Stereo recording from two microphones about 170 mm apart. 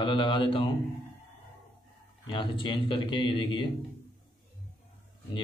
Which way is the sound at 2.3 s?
25° left (ahead or behind).